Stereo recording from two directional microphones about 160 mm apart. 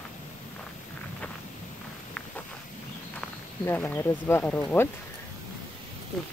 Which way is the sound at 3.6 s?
15° left (ahead or behind).